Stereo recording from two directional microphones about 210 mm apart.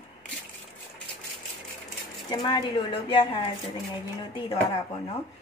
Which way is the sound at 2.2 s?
20° left (ahead or behind).